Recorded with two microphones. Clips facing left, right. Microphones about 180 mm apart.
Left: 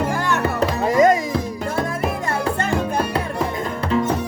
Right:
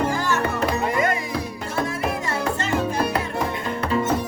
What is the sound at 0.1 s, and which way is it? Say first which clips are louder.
Music: left 1 dB; 60° left (ahead or behind).